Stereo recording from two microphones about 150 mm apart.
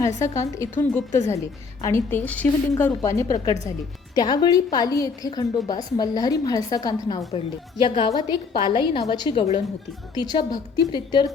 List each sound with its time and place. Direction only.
0.2 s a woman's voice: 20° left (ahead or behind)